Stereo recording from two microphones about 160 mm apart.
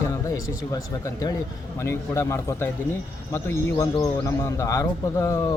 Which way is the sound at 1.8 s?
15° left (ahead or behind).